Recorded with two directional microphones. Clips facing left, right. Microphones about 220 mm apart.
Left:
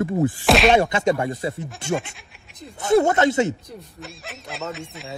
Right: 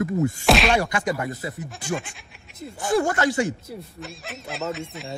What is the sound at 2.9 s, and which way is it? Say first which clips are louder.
Speech: left 5 dB; 20° left (ahead or behind).